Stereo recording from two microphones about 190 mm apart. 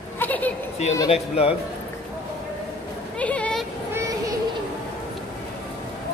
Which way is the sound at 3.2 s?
5° left (ahead or behind).